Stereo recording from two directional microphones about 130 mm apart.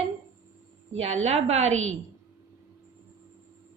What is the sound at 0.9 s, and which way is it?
Speech, 60° right (ahead or behind).